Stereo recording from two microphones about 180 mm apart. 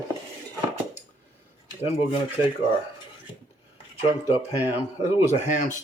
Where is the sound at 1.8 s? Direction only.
35° left (ahead or behind).